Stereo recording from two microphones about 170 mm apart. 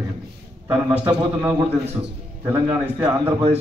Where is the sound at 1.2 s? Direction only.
20° right (ahead or behind).